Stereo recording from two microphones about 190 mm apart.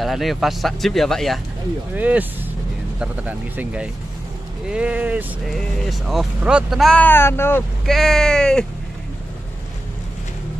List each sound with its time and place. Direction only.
0.0 s speech: centre (ahead or behind)